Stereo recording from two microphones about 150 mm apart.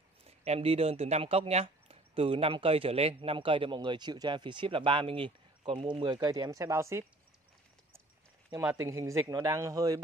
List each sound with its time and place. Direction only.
0.3 s speech: 40° right (ahead or behind); by 7.1 s 20° right (ahead or behind)
8.8 s speech: 20° right (ahead or behind)